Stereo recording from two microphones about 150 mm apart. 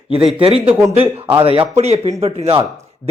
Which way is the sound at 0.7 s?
10° right (ahead or behind).